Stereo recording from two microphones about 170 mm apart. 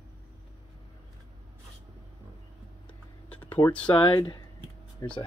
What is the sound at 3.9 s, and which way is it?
Speech, 30° left (ahead or behind).